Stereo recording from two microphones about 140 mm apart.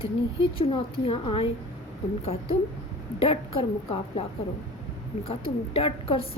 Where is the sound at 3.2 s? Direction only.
40° left (ahead or behind).